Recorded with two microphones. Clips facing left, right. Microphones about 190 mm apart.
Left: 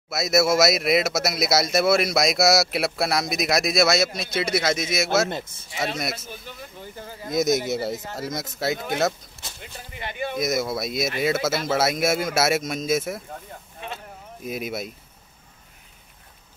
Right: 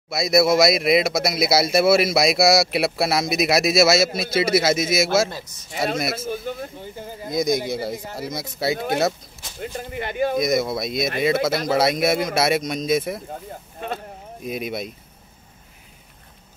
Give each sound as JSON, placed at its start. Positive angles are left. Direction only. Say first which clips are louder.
{"t": 0.1, "sound": "speech", "louder": "right 3 dB", "side_deg": 0}
{"t": 5.3, "sound": "speech", "louder": "left 4 dB", "side_deg": 30}
{"t": 6.1, "sound": "speech", "louder": "right 11 dB", "side_deg": -50}
{"t": 6.8, "sound": "speech", "louder": "right 3 dB", "side_deg": -15}
{"t": 7.2, "sound": "speech", "louder": "even", "side_deg": 5}
{"t": 9.6, "sound": "speech", "louder": "right 10 dB", "side_deg": -50}
{"t": 10.4, "sound": "speech", "louder": "right 3 dB", "side_deg": 5}
{"t": 13.7, "sound": "a sound", "louder": "right 6 dB", "side_deg": -45}
{"t": 14.4, "sound": "speech", "louder": "right 2 dB", "side_deg": 5}